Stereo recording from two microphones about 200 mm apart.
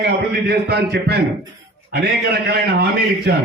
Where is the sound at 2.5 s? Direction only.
55° right (ahead or behind).